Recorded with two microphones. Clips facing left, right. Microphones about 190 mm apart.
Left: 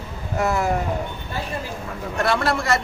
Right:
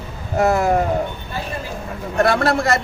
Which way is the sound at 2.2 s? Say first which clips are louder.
Right 4 dB; 45° right (ahead or behind).